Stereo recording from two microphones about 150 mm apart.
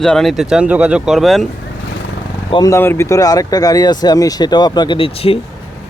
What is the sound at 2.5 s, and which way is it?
Speech, 20° left (ahead or behind).